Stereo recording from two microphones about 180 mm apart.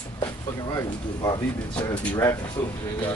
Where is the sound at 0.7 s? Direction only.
20° left (ahead or behind).